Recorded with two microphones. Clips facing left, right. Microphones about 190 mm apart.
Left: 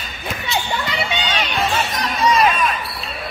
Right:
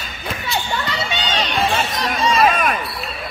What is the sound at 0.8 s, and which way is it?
Crowd, 15° left (ahead or behind).